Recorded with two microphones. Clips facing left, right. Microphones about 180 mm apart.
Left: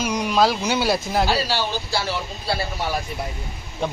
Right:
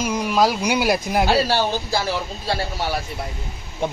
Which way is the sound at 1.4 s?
50° right (ahead or behind).